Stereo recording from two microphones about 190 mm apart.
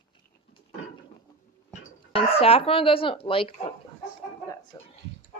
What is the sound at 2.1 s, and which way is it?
Speech, 30° left (ahead or behind).